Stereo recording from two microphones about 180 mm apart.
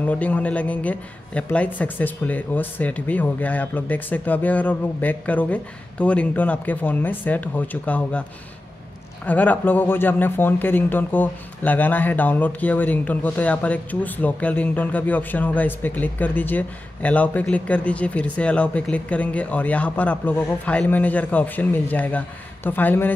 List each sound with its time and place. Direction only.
0.0 s speech: 10° left (ahead or behind)